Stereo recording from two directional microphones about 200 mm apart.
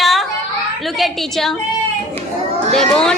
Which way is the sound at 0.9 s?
Centre (ahead or behind).